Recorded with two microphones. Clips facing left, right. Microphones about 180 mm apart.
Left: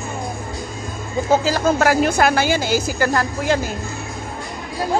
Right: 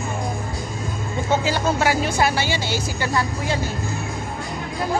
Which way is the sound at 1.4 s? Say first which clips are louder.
Left 4 dB; 40° left (ahead or behind).